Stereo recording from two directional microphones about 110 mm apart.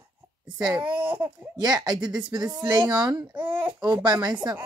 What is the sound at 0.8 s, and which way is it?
Speech, 50° right (ahead or behind).